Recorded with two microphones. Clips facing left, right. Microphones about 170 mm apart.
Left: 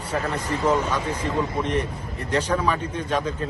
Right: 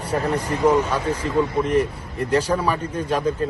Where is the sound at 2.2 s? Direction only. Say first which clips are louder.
Right 3 dB; 10° right (ahead or behind).